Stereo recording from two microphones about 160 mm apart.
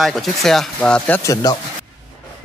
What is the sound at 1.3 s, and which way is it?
Speech, 25° left (ahead or behind).